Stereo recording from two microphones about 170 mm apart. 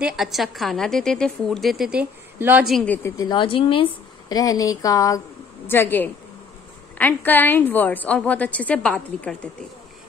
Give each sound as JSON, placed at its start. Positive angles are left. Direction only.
{"t": 0.0, "sound": "a woman's voice", "side_deg": 0}
{"t": 2.6, "sound": "a woman's voice", "side_deg": 5}
{"t": 3.2, "sound": "a woman's voice", "side_deg": 25}